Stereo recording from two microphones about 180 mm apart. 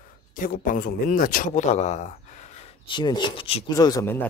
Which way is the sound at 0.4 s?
50° left (ahead or behind).